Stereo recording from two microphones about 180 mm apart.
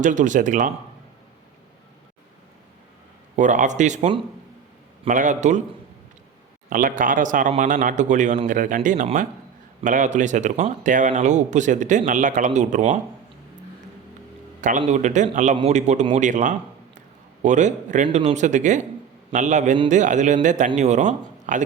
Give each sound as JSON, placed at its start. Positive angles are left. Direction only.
{"t": 0.0, "sound": "speech", "side_deg": -45}
{"t": 3.3, "sound": "speech", "side_deg": -45}
{"t": 6.7, "sound": "speech", "side_deg": -50}
{"t": 14.6, "sound": "speech", "side_deg": -45}